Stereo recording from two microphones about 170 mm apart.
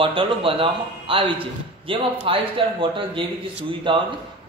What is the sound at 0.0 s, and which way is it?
A man's voice, 30° right (ahead or behind).